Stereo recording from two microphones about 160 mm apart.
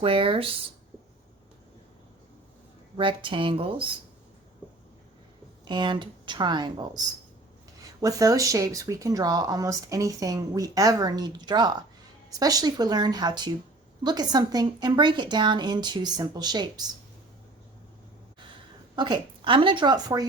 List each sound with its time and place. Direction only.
0.0 s speech: 35° right (ahead or behind)
3.0 s speech: 30° right (ahead or behind)
5.6 s speech: 30° right (ahead or behind)
18.9 s speech: 30° right (ahead or behind)